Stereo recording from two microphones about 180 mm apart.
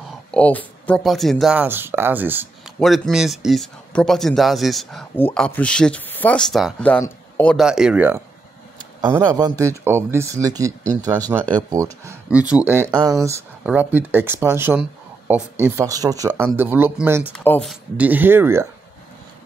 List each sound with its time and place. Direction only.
0.3 s speech: 10° left (ahead or behind); by 2.4 s 10° right (ahead or behind)
2.8 s speech: centre (ahead or behind)
7.5 s speech: 5° right (ahead or behind)
9.1 s speech: 20° right (ahead or behind)
17.3 s speech: 10° left (ahead or behind)
17.6 s speech: 10° right (ahead or behind)